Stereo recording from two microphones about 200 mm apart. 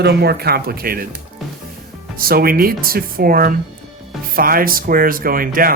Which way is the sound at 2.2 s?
50° right (ahead or behind).